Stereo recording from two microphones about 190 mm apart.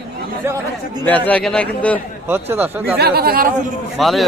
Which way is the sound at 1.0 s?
10° left (ahead or behind).